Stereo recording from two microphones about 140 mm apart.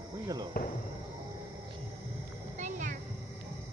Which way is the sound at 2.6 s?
60° right (ahead or behind).